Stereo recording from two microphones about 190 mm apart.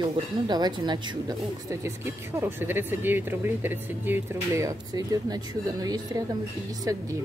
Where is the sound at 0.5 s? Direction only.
20° right (ahead or behind).